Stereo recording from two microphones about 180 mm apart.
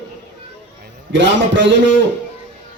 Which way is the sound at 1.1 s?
85° right.